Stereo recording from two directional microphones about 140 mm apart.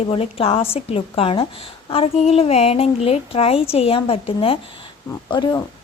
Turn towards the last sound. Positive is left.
turn(degrees=35)  # may be behind; listen again after turning